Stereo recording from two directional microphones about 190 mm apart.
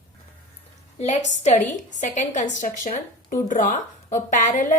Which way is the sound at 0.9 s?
35° left (ahead or behind).